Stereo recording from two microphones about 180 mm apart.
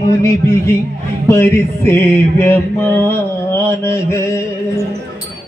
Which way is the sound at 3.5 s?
15° left (ahead or behind).